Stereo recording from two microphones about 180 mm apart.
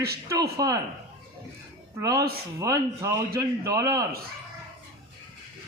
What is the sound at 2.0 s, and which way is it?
A man's voice, 20° right (ahead or behind).